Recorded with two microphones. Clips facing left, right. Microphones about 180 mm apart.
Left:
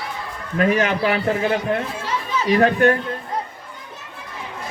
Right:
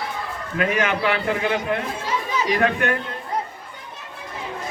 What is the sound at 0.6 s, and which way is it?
Speech, 40° left (ahead or behind).